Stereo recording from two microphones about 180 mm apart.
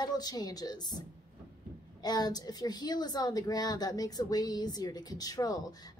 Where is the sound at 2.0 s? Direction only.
20° left (ahead or behind).